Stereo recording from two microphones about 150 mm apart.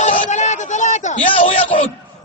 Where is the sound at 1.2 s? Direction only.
40° left (ahead or behind).